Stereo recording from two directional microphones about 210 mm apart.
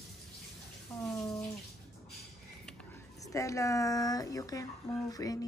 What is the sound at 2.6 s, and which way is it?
Speech, 15° left (ahead or behind).